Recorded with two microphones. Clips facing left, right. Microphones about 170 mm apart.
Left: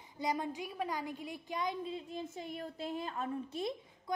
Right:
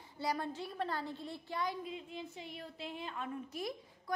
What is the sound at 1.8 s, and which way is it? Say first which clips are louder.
A woman's voice: left 3 dB; 35° left (ahead or behind).